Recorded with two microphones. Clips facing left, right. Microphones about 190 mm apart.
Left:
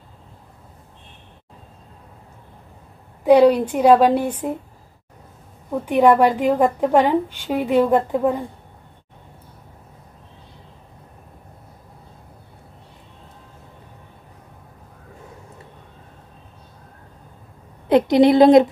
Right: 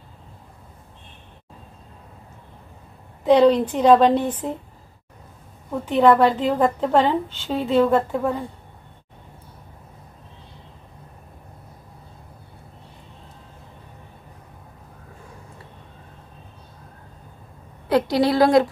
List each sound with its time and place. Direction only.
3.3 s a woman's voice: 10° left (ahead or behind)
5.7 s a woman's voice: 10° left (ahead or behind)
17.8 s speech: 20° left (ahead or behind)